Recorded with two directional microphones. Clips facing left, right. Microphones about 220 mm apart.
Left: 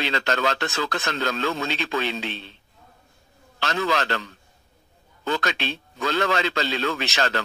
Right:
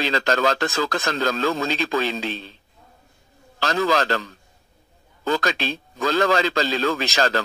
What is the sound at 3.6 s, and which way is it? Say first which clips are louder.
A man's voice: right 4 dB; 40° right (ahead or behind).